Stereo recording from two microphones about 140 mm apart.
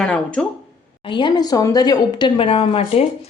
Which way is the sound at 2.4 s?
40° left (ahead or behind).